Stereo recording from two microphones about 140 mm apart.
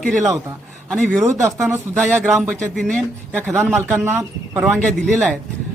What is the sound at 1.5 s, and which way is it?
Speech, 20° right (ahead or behind).